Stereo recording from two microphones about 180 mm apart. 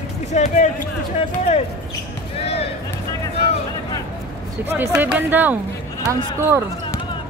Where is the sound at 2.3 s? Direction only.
35° left (ahead or behind).